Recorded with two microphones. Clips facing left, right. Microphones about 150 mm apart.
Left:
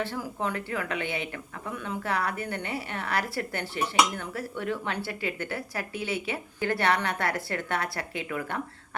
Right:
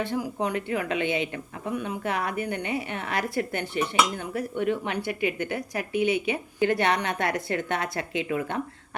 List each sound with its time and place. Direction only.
0.0 s speech: 20° right (ahead or behind)